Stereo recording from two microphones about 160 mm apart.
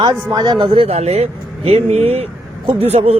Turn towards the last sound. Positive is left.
turn(degrees=-40)  # may be behind; listen again after turning